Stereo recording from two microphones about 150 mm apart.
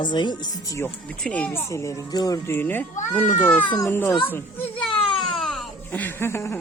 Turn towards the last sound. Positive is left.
turn(degrees=15)  # may be behind; listen again after turning